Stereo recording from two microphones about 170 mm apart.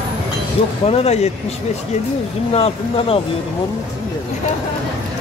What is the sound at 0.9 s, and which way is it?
Speech, 40° left (ahead or behind).